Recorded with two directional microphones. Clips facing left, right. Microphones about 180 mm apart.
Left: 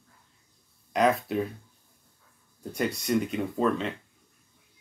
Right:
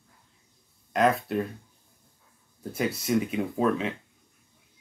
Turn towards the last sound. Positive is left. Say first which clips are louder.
# right 1 dB
turn(degrees=-5)  # may be behind; listen again after turning